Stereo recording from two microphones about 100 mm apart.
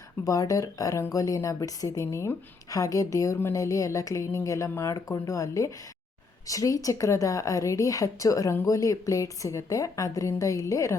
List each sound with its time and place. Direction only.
0.3 s speech: 35° left (ahead or behind)